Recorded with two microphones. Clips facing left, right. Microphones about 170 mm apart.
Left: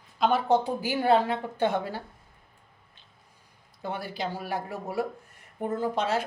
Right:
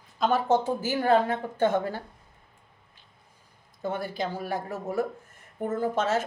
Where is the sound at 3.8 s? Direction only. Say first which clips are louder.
Right 2 dB; 45° right (ahead or behind).